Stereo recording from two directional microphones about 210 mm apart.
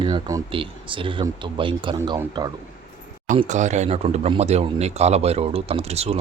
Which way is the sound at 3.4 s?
35° right (ahead or behind).